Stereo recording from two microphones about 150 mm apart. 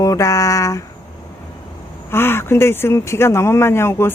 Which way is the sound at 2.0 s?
15° left (ahead or behind).